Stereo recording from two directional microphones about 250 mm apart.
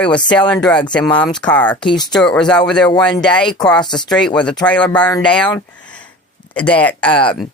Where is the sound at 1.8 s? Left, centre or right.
Centre.